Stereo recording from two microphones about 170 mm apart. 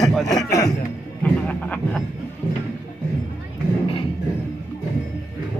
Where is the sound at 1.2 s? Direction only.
10° left (ahead or behind).